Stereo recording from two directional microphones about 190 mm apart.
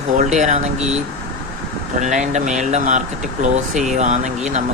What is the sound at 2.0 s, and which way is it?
Speech, 40° right (ahead or behind).